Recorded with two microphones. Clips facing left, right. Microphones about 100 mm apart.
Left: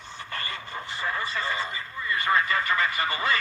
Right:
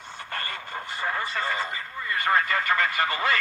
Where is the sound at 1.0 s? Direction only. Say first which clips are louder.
Right 1 dB; 55° right (ahead or behind).